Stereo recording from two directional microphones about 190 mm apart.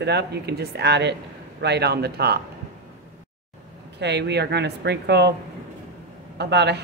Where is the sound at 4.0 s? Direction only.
65° right (ahead or behind).